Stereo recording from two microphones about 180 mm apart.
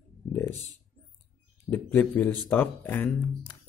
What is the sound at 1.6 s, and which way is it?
Speech, 10° left (ahead or behind).